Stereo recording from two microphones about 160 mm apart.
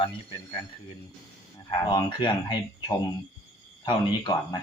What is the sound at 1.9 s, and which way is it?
Speech, 30° left (ahead or behind).